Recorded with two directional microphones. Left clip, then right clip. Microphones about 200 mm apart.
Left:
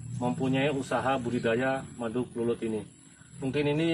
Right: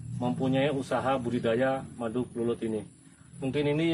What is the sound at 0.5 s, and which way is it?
A man's voice, 20° right (ahead or behind).